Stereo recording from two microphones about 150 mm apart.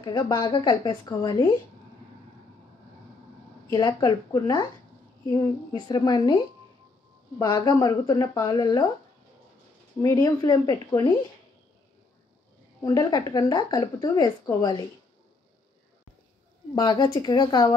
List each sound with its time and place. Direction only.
0.0 s a woman's voice: 30° left (ahead or behind)
3.7 s a woman's voice: 25° left (ahead or behind)
10.0 s a woman's voice: 25° left (ahead or behind)
12.8 s a woman's voice: 25° left (ahead or behind)
16.7 s a woman's voice: 30° left (ahead or behind)